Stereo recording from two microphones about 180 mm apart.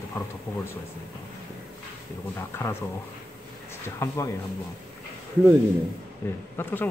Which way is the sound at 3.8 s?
15° left (ahead or behind).